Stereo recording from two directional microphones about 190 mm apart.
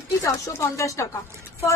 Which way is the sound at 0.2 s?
15° left (ahead or behind).